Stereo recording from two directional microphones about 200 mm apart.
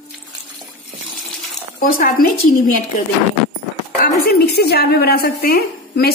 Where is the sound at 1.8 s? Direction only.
45° left (ahead or behind).